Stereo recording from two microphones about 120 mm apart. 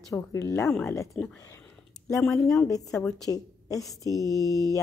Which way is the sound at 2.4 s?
30° left (ahead or behind).